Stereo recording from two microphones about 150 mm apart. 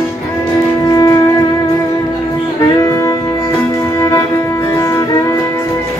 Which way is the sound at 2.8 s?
20° left (ahead or behind).